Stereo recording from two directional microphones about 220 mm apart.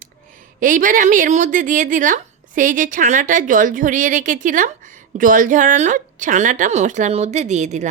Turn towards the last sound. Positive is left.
turn(degrees=-30)  # may be behind; listen again after turning